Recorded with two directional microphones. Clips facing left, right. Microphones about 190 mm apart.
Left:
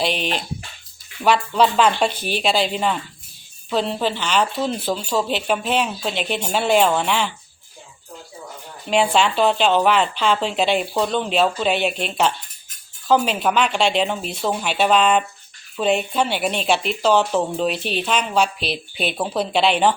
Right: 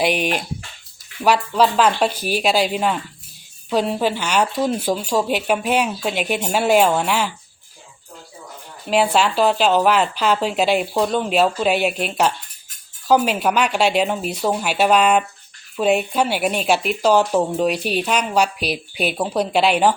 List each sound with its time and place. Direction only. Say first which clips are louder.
0.0 s speech: right 3 dB; 10° right (ahead or behind)
8.9 s speech: right 1 dB; 5° right (ahead or behind)